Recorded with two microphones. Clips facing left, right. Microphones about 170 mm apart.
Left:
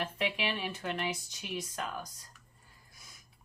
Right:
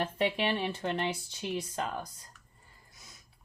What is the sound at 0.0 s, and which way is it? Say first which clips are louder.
Speech: right 4 dB; 30° right (ahead or behind).